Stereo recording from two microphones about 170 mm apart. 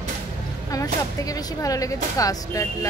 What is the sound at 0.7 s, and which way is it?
Speech, 20° left (ahead or behind).